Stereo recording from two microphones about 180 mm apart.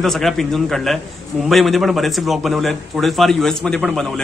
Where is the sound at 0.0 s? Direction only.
Centre (ahead or behind).